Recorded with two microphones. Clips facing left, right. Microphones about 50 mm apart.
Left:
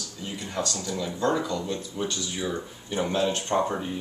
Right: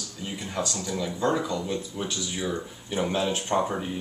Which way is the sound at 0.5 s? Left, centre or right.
Centre.